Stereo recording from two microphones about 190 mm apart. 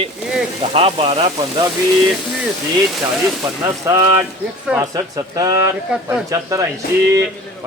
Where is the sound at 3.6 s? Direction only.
15° right (ahead or behind).